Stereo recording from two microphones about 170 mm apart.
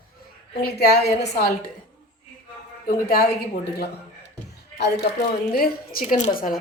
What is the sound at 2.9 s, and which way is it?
Speech, 60° left (ahead or behind).